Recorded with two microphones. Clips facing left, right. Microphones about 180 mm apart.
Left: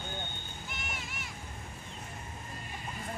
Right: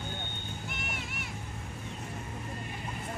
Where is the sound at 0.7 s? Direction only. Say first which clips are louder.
Right 3 dB; 60° right (ahead or behind).